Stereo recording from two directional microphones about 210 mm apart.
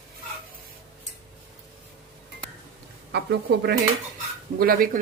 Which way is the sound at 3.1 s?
50° right (ahead or behind).